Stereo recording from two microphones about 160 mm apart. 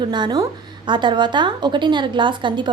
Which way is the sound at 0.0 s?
30° right (ahead or behind).